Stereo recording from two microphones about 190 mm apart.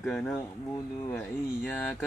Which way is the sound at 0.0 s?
5° left (ahead or behind).